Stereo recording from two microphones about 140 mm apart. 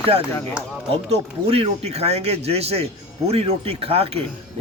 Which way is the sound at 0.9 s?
45° right (ahead or behind).